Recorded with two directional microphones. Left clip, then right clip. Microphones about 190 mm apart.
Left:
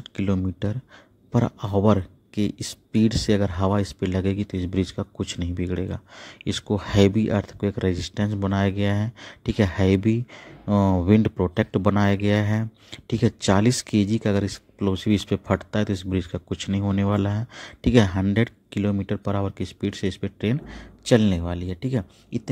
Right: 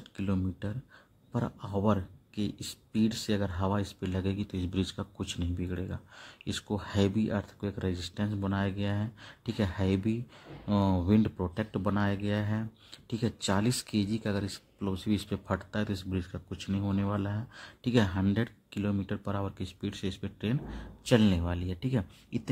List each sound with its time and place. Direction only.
0.1 s speech: 25° left (ahead or behind)